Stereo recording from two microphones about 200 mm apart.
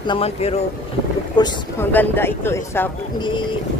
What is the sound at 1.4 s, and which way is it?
Speech, 20° left (ahead or behind).